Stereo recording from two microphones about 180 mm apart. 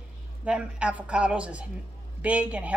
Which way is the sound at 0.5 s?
5° right (ahead or behind).